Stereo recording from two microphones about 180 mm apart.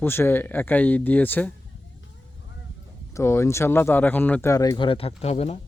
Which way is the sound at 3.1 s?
15° left (ahead or behind).